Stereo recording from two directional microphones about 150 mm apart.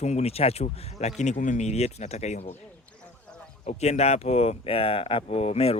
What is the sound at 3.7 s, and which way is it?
Speech, 45° left (ahead or behind).